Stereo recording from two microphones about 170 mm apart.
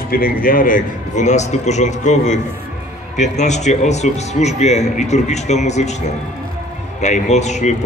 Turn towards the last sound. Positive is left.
turn(degrees=45)  # may be behind; listen again after turning